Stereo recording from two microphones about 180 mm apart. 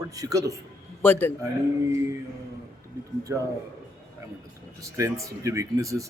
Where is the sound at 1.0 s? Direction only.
10° left (ahead or behind).